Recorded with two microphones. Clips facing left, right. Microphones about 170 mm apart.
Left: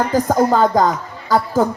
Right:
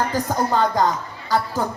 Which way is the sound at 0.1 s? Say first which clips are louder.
Left 7 dB; 45° left (ahead or behind).